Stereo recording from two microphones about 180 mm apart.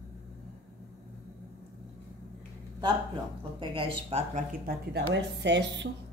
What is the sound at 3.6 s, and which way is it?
Speech, 30° right (ahead or behind).